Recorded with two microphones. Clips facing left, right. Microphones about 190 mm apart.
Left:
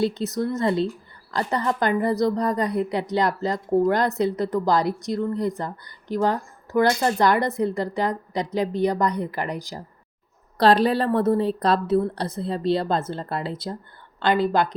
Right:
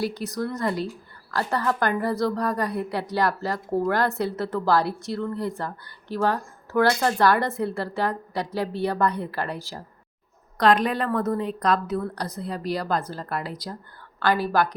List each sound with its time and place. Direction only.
0.0 s a woman's voice: 25° left (ahead or behind)
10.6 s a woman's voice: 30° left (ahead or behind)